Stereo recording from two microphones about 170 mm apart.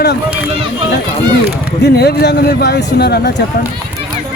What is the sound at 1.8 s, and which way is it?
Speech, 70° left (ahead or behind).